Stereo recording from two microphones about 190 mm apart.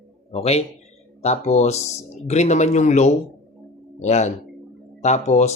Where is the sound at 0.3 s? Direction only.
35° left (ahead or behind).